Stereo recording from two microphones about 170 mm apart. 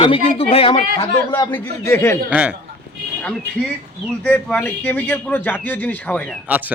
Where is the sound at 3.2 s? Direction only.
5° left (ahead or behind).